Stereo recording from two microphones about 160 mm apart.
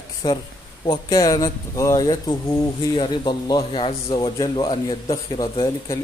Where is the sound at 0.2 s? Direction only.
25° left (ahead or behind).